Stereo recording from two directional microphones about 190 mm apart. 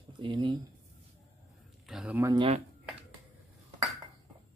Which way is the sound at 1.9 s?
5° right (ahead or behind).